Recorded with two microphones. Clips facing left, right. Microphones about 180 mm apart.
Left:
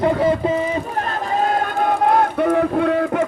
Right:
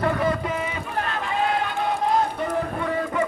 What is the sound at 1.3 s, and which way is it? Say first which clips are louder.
Run: left 5 dB; 40° left (ahead or behind).